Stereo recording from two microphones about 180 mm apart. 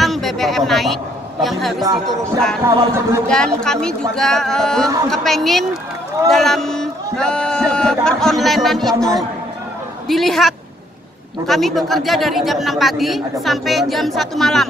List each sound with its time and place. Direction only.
0.0 s a sound: centre (ahead or behind)
1.4 s speech: centre (ahead or behind)
2.6 s speech: 15° right (ahead or behind)
3.3 s speech: 5° left (ahead or behind)